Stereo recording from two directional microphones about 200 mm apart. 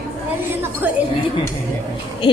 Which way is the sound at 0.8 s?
10° right (ahead or behind).